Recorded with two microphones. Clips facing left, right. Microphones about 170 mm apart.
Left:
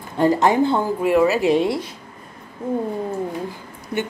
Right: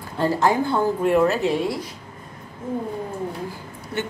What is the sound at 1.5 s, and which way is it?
Speech, 25° left (ahead or behind).